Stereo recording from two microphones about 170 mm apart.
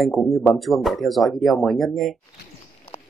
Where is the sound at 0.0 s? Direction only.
10° left (ahead or behind).